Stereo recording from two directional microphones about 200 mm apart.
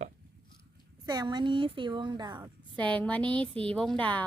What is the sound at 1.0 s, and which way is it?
A woman's voice, 20° right (ahead or behind).